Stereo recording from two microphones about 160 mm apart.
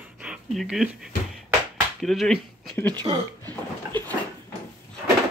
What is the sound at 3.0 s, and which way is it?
Speech, 25° right (ahead or behind).